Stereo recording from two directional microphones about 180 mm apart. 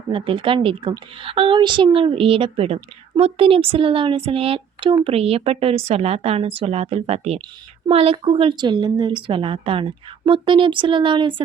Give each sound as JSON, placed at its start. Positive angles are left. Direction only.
{"t": 0.1, "sound": "a woman's voice", "side_deg": -30}